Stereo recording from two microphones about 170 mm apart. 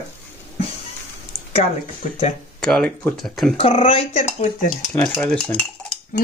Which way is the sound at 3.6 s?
35° left (ahead or behind).